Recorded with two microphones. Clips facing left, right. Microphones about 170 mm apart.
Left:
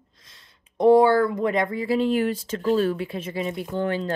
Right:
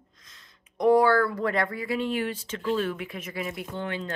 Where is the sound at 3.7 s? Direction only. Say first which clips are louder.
Left 9 dB; 40° left (ahead or behind).